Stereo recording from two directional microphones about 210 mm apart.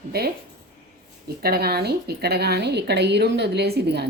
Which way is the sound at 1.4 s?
50° right (ahead or behind).